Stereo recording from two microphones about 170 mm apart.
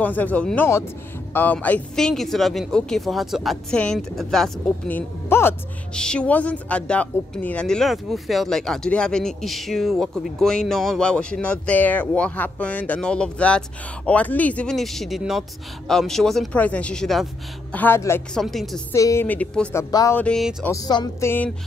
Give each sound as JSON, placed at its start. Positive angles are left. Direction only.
{"t": 0.0, "sound": "a woman's voice", "side_deg": 10}
{"t": 17.7, "sound": "a woman's voice", "side_deg": 15}
{"t": 18.3, "sound": "speech", "side_deg": 0}
{"t": 18.9, "sound": "a woman's voice", "side_deg": 15}
{"t": 19.8, "sound": "speech", "side_deg": 20}
{"t": 20.2, "sound": "speech", "side_deg": 5}
{"t": 20.7, "sound": "speech", "side_deg": 25}